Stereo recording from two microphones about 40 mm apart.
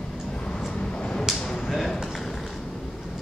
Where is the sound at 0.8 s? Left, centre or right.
Left.